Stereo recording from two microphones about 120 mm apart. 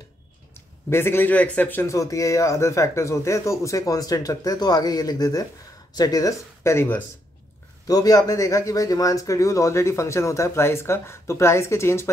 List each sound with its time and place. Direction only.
0.6 s speech: 20° left (ahead or behind)